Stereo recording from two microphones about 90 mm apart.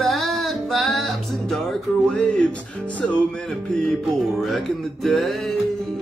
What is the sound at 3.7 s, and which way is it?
Music, centre (ahead or behind).